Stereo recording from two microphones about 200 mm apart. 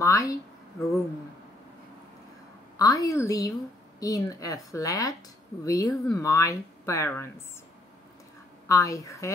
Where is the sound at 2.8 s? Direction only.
15° left (ahead or behind).